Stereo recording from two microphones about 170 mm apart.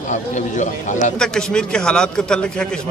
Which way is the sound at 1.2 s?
5° left (ahead or behind).